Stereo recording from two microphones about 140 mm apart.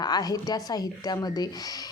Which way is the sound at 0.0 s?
30° left (ahead or behind).